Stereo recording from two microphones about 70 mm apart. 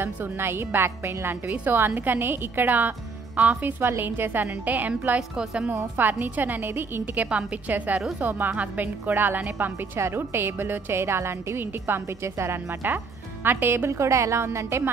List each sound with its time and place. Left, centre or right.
0.0 s a woman's voice: right
1.5 s a woman's voice: right
3.8 s a woman's voice: right
5.3 s a woman's voice: centre
5.9 s a woman's voice: right
9.9 s a woman's voice: right